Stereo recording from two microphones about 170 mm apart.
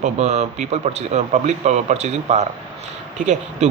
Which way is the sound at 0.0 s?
40° right (ahead or behind).